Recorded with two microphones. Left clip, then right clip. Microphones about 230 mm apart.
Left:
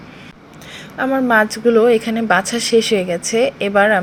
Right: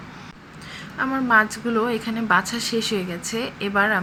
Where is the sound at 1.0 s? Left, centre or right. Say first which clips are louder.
Left 4 dB; centre.